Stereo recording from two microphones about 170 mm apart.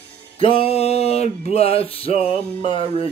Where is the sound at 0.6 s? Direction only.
35° left (ahead or behind).